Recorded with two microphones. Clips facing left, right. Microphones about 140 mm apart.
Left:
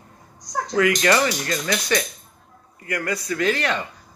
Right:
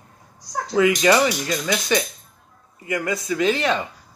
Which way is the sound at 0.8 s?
15° right (ahead or behind).